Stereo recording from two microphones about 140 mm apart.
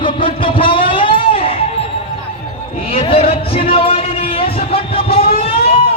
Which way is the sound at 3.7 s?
45° left (ahead or behind).